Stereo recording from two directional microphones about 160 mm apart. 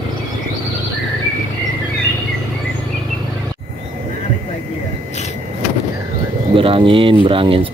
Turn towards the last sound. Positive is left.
turn(degrees=-35)  # may be behind; listen again after turning